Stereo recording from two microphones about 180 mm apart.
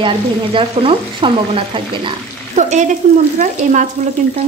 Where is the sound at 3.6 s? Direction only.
45° right (ahead or behind).